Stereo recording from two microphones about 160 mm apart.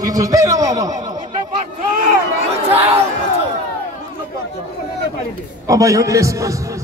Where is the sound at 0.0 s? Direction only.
20° right (ahead or behind).